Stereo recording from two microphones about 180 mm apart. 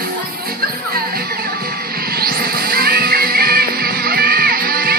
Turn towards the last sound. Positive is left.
turn(degrees=-55)  # may be behind; listen again after turning